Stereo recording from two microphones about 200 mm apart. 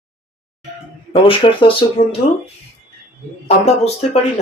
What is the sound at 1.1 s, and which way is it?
Speech, 25° left (ahead or behind).